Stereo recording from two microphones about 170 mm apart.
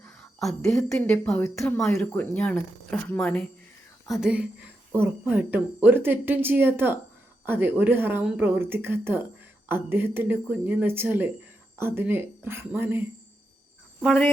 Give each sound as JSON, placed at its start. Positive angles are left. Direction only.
{"t": 0.7, "sound": "speech", "side_deg": 5}
{"t": 1.6, "sound": "a woman's voice", "side_deg": 5}
{"t": 14.0, "sound": "speech", "side_deg": 5}